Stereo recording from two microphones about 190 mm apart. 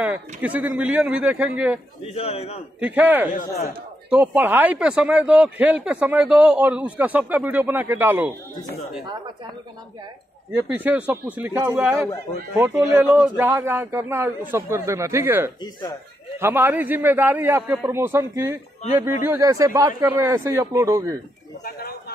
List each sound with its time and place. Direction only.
0.0 s speech: 10° right (ahead or behind)
2.1 s a man's voice: 30° left (ahead or behind)
2.8 s speech: 10° right (ahead or behind)
10.5 s speech: 10° right (ahead or behind)
21.6 s speech: 55° left (ahead or behind)